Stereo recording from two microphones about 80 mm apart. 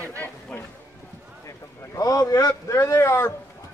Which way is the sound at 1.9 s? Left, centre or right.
Left.